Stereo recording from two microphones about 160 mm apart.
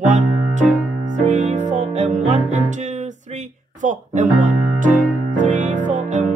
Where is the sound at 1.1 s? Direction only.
50° right (ahead or behind).